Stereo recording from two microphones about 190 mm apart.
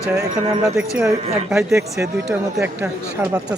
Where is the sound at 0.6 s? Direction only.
15° right (ahead or behind).